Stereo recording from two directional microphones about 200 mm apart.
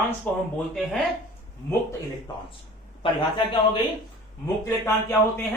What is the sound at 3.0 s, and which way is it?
Speech, 25° left (ahead or behind).